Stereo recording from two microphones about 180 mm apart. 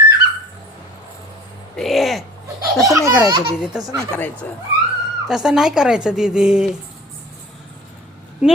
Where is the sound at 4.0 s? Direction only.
10° left (ahead or behind).